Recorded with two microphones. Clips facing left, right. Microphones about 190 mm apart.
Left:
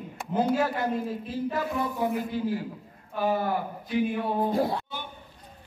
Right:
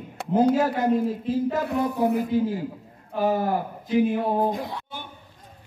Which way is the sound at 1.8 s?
40° right (ahead or behind).